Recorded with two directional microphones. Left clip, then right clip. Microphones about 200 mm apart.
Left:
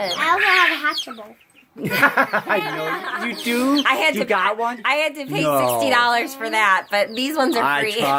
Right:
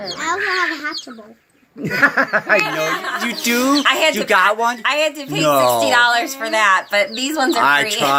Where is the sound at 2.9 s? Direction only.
20° left (ahead or behind).